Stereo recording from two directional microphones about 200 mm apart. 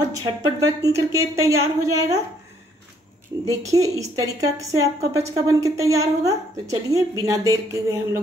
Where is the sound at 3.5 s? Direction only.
15° right (ahead or behind).